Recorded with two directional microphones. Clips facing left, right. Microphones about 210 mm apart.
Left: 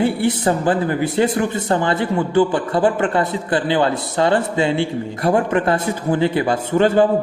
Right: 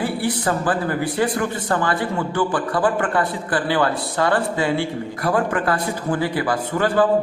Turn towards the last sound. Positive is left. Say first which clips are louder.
# left 4 dB
turn(degrees=25)  # may be behind; listen again after turning